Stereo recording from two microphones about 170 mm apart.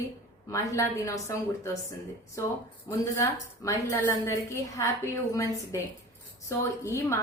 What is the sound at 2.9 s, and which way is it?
A woman's voice, 20° left (ahead or behind).